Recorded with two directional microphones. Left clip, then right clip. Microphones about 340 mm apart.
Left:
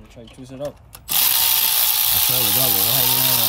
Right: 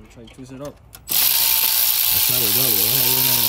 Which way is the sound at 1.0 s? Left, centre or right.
Centre.